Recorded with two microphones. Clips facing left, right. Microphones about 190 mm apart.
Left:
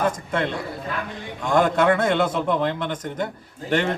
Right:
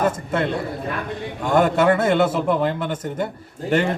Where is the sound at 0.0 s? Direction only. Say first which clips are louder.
Right 2 dB; 5° right (ahead or behind).